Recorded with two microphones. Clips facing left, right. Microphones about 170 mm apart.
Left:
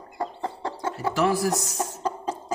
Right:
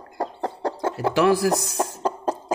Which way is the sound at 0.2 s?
45° right (ahead or behind).